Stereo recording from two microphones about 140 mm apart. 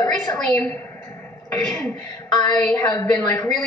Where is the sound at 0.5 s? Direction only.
15° left (ahead or behind).